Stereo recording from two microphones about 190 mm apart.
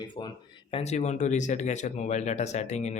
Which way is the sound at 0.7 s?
35° left (ahead or behind).